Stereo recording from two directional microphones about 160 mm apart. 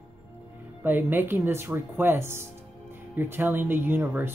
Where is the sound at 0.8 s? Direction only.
10° right (ahead or behind).